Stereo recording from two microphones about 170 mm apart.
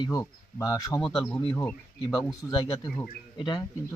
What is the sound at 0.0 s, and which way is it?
Speech, 20° left (ahead or behind).